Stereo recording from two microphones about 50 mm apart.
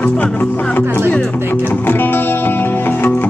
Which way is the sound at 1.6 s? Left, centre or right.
Left.